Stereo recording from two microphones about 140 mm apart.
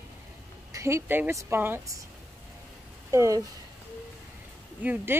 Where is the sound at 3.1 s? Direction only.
25° right (ahead or behind).